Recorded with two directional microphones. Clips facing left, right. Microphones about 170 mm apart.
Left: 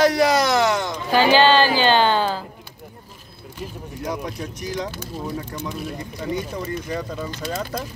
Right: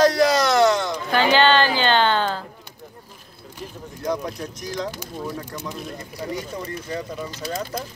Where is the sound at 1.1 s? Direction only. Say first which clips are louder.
Left 2 dB; 10° left (ahead or behind).